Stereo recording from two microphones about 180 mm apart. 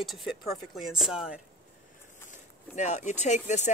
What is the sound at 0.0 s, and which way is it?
Speech, centre (ahead or behind).